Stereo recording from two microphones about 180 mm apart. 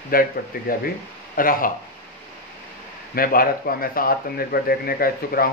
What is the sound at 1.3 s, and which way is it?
Speech, 50° left (ahead or behind).